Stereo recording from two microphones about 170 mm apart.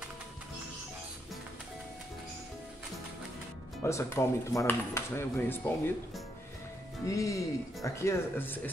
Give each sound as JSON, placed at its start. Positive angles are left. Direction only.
{"t": 3.8, "sound": "speech", "side_deg": 15}
{"t": 7.1, "sound": "speech", "side_deg": 20}